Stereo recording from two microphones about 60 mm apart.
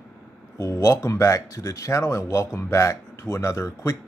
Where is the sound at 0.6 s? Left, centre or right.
Left.